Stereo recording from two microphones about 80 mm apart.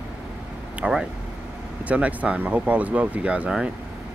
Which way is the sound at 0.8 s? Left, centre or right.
Centre.